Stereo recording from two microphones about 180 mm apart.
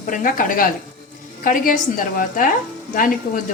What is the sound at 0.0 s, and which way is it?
A woman's voice, 45° left (ahead or behind).